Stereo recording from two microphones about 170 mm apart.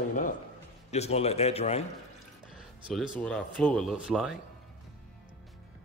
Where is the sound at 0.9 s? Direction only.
40° left (ahead or behind).